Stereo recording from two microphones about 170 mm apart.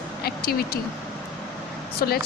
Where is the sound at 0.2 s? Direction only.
65° left (ahead or behind).